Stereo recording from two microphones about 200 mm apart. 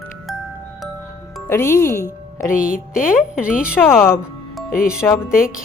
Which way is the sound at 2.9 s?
5° right (ahead or behind).